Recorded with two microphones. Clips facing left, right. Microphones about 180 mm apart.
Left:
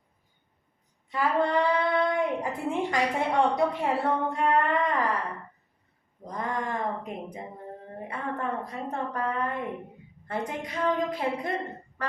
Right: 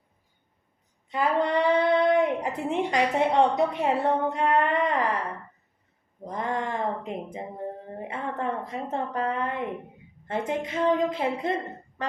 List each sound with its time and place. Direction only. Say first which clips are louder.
1.1 s speech: right 1 dB; 20° right (ahead or behind)
6.2 s a woman's voice: right 2 dB; 25° right (ahead or behind)